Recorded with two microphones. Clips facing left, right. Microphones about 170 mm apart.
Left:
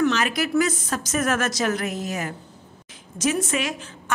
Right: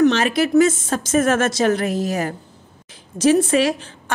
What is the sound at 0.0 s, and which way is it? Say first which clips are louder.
A woman's voice: right 6 dB; 30° right (ahead or behind).